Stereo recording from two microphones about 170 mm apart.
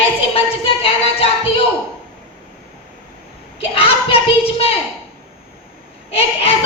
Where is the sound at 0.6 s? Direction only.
30° left (ahead or behind).